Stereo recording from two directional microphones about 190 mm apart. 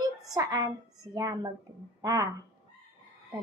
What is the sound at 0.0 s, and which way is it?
A woman's voice, 20° right (ahead or behind).